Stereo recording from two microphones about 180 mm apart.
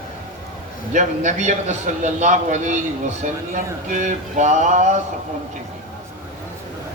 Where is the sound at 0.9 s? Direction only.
40° right (ahead or behind).